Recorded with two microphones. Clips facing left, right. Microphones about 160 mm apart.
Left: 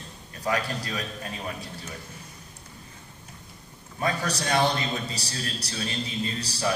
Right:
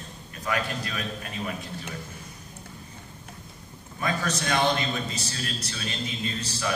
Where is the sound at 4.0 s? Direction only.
35° left (ahead or behind).